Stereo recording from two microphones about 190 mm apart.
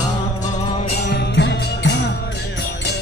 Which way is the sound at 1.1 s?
65° left (ahead or behind).